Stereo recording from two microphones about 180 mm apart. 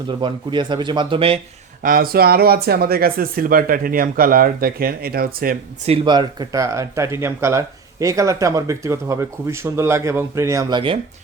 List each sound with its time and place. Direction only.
0.2 s speech: 25° right (ahead or behind)
1.8 s speech: 50° right (ahead or behind)
6.1 s speech: 25° right (ahead or behind)